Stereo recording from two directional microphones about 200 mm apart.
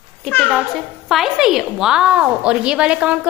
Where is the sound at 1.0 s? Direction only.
Centre (ahead or behind).